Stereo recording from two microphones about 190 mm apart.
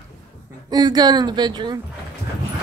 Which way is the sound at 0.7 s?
20° right (ahead or behind).